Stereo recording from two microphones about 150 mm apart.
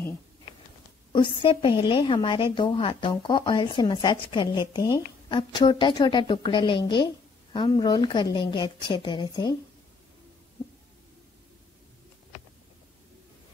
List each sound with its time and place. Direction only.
1.1 s a woman's voice: 35° left (ahead or behind)